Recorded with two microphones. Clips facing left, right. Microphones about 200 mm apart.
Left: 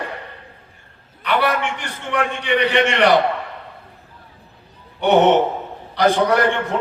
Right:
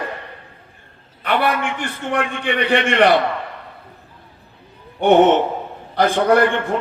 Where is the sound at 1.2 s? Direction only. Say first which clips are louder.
Even; 50° right (ahead or behind).